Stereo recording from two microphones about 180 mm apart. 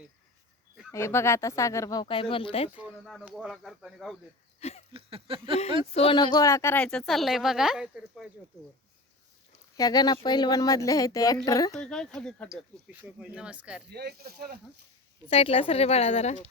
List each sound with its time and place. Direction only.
0.9 s speech: 15° left (ahead or behind); by 2.6 s 30° left (ahead or behind)
2.7 s speech: 5° right (ahead or behind)
4.9 s a sound: 30° right (ahead or behind)
5.9 s speech: 30° left (ahead or behind); by 8.3 s 5° right (ahead or behind)
9.7 s a woman's voice: 20° left (ahead or behind)
11.7 s speech: 5° left (ahead or behind)
12.9 s speech: 10° right (ahead or behind)
13.9 s speech: 60° right (ahead or behind)
15.3 s a woman's voice: 30° left (ahead or behind)